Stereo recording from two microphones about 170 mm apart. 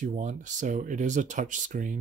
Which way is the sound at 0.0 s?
45° right (ahead or behind).